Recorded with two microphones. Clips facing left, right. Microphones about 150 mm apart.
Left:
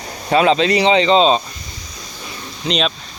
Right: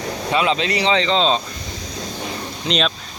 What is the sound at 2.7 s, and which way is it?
Speech, centre (ahead or behind).